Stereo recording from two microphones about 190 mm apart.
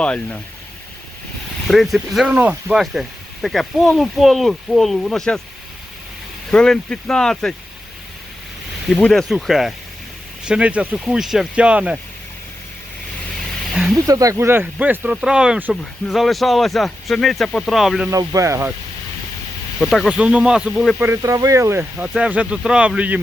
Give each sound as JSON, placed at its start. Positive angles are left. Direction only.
{"t": 0.0, "sound": "speech", "side_deg": 5}
{"t": 1.6, "sound": "speech", "side_deg": 0}
{"t": 6.5, "sound": "speech", "side_deg": 5}
{"t": 8.9, "sound": "speech", "side_deg": 5}
{"t": 13.9, "sound": "speech", "side_deg": -20}
{"t": 18.1, "sound": "speech", "side_deg": -20}
{"t": 19.8, "sound": "speech", "side_deg": 0}
{"t": 21.0, "sound": "speech", "side_deg": -15}